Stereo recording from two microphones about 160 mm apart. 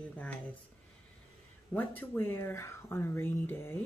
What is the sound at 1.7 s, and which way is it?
Speech, 10° left (ahead or behind).